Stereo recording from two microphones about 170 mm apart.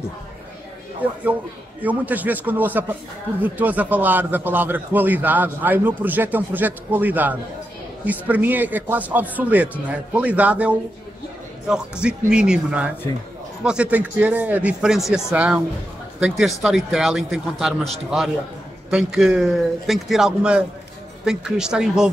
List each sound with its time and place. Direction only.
1.0 s a man's voice: 10° right (ahead or behind)